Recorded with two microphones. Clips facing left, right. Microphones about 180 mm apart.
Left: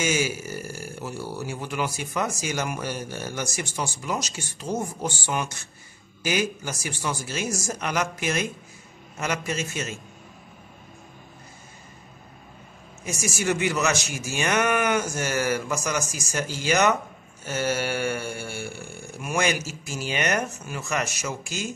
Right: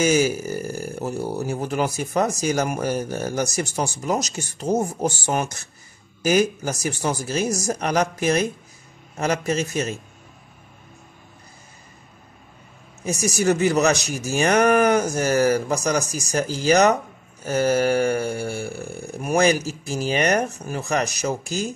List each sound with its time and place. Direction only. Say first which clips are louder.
0.0 s speech: right 7 dB; 40° right (ahead or behind)
13.0 s speech: right 6 dB; 35° right (ahead or behind)